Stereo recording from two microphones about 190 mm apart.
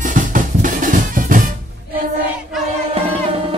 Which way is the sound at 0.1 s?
45° right (ahead or behind).